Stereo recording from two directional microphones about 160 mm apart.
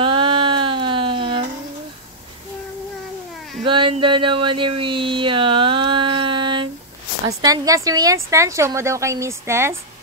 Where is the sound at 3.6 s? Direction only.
30° right (ahead or behind).